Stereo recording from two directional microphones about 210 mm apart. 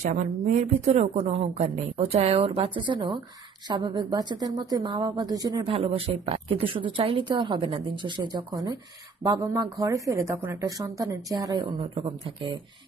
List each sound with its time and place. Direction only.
0.0 s a woman's voice: 35° right (ahead or behind)